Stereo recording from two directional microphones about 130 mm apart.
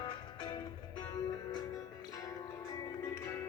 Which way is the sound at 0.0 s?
35° left (ahead or behind).